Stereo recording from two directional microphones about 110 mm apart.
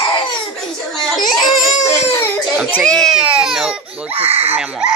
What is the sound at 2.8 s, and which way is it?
Speech, 5° left (ahead or behind).